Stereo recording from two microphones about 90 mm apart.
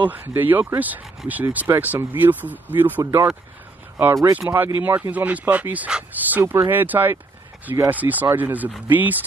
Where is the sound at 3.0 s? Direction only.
35° right (ahead or behind).